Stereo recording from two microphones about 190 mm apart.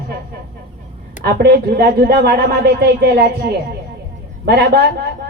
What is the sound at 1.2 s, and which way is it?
Speech, 55° right (ahead or behind).